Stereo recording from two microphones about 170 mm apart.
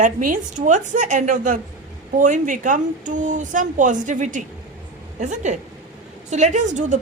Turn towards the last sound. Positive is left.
turn(degrees=-45)  # may be behind; listen again after turning